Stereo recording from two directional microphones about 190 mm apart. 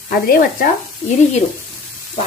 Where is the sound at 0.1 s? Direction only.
50° left (ahead or behind).